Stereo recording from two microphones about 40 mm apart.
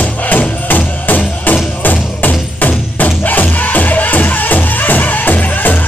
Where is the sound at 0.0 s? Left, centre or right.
Left.